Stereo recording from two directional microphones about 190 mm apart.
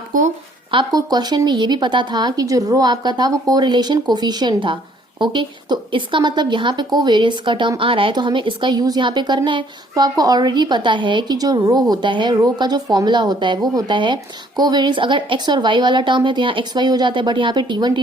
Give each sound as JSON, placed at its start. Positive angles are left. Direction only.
{"t": 0.1, "sound": "speech", "side_deg": -45}
{"t": 0.7, "sound": "a woman's voice", "side_deg": -25}